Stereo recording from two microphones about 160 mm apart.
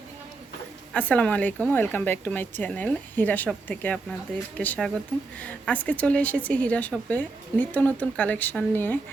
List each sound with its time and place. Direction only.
0.9 s a woman's voice: 10° left (ahead or behind)